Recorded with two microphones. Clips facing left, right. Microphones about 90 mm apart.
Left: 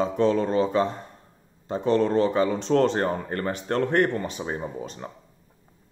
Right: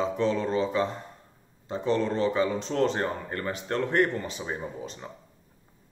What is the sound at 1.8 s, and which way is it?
Speech, 55° left (ahead or behind).